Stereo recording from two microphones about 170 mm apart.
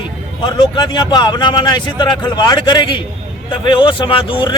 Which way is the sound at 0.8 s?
25° left (ahead or behind).